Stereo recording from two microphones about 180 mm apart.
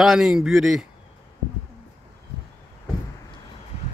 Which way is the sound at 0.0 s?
Centre (ahead or behind).